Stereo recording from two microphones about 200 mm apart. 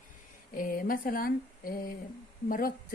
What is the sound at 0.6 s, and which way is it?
A woman's voice, 45° left (ahead or behind).